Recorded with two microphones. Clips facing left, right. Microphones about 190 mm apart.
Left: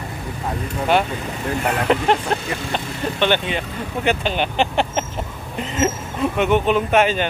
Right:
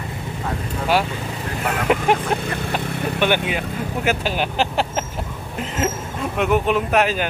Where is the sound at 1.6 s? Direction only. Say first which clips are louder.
Even; 5° right (ahead or behind).